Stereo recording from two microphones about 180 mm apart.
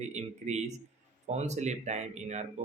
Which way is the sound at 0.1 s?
40° right (ahead or behind).